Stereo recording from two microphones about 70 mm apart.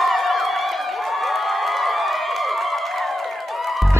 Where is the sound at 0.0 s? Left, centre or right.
Centre.